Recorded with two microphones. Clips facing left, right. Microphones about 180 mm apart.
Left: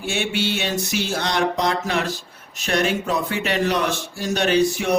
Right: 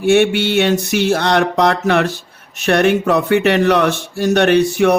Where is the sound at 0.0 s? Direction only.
65° right (ahead or behind).